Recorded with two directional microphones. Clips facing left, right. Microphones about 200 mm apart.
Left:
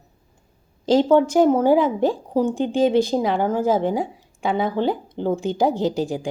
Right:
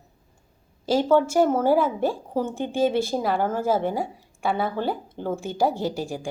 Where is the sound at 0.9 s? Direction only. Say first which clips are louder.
Left 4 dB; 15° left (ahead or behind).